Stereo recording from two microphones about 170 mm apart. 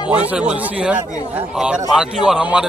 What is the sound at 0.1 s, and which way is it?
A man's voice, 10° right (ahead or behind).